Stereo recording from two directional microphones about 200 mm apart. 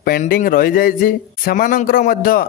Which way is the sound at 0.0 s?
50° left (ahead or behind).